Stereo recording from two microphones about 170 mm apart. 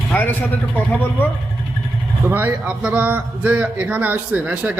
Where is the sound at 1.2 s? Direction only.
10° left (ahead or behind).